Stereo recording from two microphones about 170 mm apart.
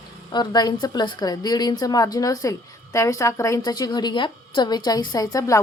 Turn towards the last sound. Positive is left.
turn(degrees=20)  # may be behind; listen again after turning